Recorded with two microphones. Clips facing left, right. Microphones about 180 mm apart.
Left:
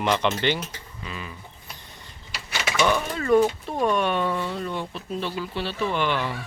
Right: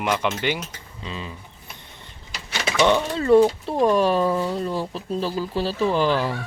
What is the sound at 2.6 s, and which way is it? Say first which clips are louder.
Speech: right 4 dB; 30° right (ahead or behind).